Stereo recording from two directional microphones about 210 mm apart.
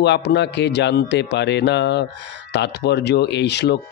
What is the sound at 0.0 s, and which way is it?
Speech, 55° left (ahead or behind).